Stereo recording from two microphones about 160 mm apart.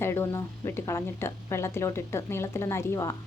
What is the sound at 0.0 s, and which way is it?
A woman's voice, 15° left (ahead or behind).